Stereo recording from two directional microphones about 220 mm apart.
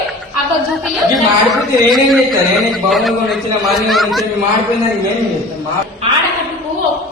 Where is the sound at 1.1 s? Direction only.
Centre (ahead or behind).